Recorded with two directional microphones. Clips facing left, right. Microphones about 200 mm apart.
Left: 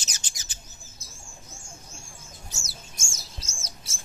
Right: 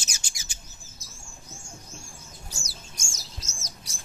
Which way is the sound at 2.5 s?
25° left (ahead or behind).